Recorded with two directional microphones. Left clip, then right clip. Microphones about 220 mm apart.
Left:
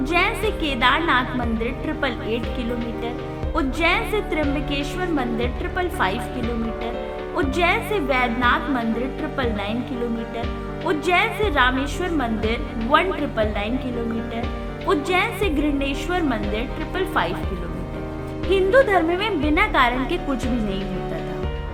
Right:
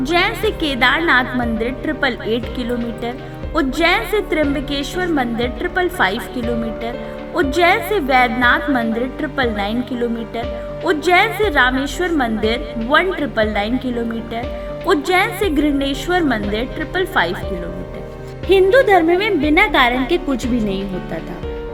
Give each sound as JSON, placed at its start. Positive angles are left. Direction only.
{"t": 0.0, "sound": "a woman's voice", "side_deg": -20}
{"t": 7.3, "sound": "a woman's voice", "side_deg": -25}
{"t": 10.8, "sound": "a woman's voice", "side_deg": -25}
{"t": 14.8, "sound": "a woman's voice", "side_deg": -25}
{"t": 18.5, "sound": "a woman's voice", "side_deg": -20}